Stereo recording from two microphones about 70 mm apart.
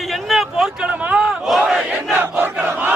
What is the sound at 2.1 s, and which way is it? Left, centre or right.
Crowd, right.